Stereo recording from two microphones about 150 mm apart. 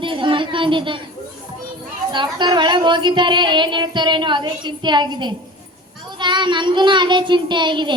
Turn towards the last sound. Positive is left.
turn(degrees=-30)  # may be behind; listen again after turning